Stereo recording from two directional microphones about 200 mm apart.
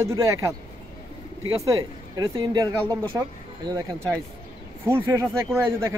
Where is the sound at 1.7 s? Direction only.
20° right (ahead or behind).